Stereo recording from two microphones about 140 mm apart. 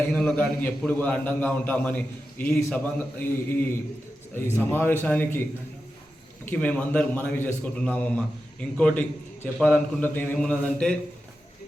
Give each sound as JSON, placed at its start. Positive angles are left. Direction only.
{"t": 0.1, "sound": "a man's voice", "side_deg": 5}
{"t": 6.4, "sound": "a man's voice", "side_deg": 15}